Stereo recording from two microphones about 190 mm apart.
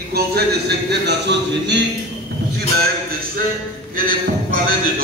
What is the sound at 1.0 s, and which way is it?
Speech, 65° right (ahead or behind).